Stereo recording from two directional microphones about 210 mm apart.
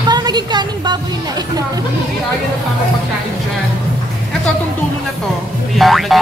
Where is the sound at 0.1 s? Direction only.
20° right (ahead or behind).